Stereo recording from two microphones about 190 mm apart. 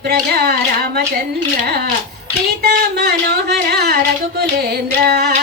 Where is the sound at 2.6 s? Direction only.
60° right (ahead or behind).